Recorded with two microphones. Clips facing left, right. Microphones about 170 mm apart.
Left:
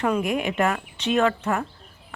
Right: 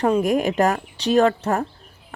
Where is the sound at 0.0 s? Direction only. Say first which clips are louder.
Right 5 dB; 40° right (ahead or behind).